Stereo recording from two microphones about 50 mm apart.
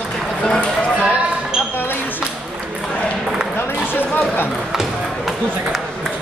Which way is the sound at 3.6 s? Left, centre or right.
Left.